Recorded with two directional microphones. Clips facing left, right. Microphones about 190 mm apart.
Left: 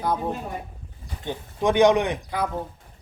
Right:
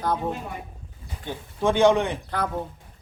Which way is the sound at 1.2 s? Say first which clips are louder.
Left 1 dB; 15° left (ahead or behind).